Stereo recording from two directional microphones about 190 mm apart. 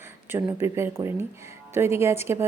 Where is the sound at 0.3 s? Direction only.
15° right (ahead or behind).